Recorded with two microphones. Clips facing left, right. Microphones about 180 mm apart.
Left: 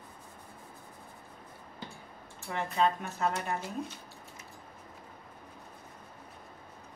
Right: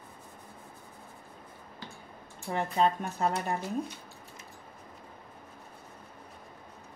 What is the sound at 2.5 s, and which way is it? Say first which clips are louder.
Speech: right 2 dB; 35° right (ahead or behind).